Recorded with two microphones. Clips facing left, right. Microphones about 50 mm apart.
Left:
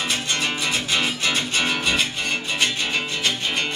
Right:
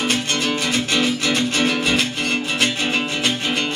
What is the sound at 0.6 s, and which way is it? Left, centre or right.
Music, right.